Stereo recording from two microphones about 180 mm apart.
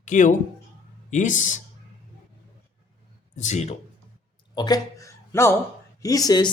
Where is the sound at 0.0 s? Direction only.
45° left (ahead or behind).